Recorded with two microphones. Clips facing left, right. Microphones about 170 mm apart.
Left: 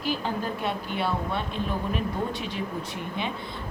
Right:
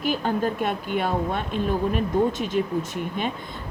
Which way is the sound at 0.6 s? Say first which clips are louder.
Right 4 dB; 50° right (ahead or behind).